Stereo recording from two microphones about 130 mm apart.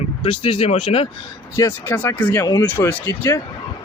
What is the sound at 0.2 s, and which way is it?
Speech, 45° left (ahead or behind).